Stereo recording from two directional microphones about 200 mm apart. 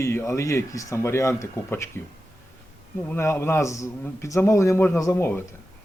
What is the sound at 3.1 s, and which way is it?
Speech, 10° left (ahead or behind).